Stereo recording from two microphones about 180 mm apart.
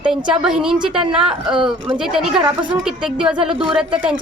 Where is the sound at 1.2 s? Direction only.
30° right (ahead or behind).